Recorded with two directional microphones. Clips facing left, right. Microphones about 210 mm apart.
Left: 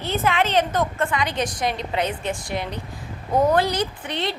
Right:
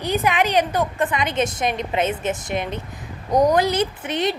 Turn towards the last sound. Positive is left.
turn(degrees=-20)  # may be behind; listen again after turning